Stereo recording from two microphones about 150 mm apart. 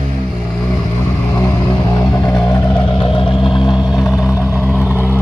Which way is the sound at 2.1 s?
25° left (ahead or behind).